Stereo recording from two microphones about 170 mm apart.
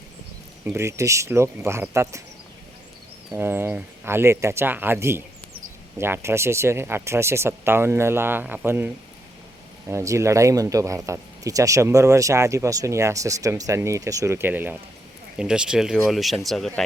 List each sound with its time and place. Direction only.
0.6 s speech: 15° right (ahead or behind)
3.2 s speech: 15° right (ahead or behind)
9.9 s speech: 15° right (ahead or behind); by 16.8 s centre (ahead or behind)